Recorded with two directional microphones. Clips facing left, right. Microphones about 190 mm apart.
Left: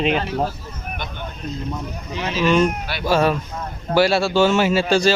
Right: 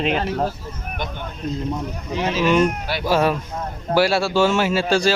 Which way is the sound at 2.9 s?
35° right (ahead or behind).